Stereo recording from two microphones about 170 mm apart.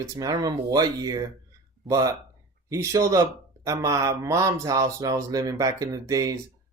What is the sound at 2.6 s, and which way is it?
Speech, 20° right (ahead or behind).